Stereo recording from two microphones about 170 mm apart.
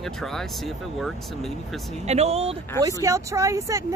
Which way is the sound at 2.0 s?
40° right (ahead or behind).